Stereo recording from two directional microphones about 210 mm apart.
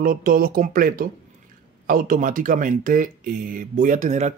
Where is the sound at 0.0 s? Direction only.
40° right (ahead or behind).